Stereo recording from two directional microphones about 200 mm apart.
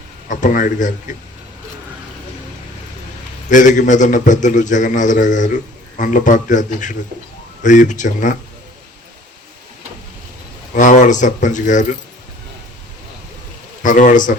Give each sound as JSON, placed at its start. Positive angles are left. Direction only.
{"t": 0.3, "sound": "a man's voice", "side_deg": 40}
{"t": 3.5, "sound": "a man's voice", "side_deg": 40}
{"t": 10.8, "sound": "a man's voice", "side_deg": 40}
{"t": 13.8, "sound": "a man's voice", "side_deg": 40}